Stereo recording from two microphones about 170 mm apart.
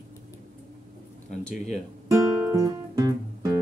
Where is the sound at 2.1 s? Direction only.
20° right (ahead or behind).